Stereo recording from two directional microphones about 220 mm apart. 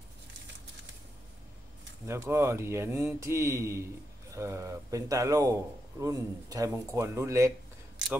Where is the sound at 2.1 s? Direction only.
10° right (ahead or behind).